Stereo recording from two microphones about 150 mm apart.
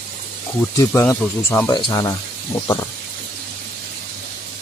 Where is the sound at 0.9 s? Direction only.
15° left (ahead or behind).